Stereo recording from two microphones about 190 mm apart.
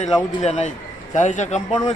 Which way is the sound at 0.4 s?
35° left (ahead or behind).